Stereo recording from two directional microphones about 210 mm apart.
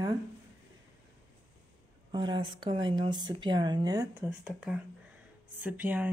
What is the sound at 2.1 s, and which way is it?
Speech, 20° right (ahead or behind).